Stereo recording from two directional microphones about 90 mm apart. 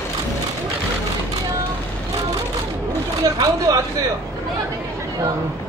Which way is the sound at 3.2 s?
40° right (ahead or behind).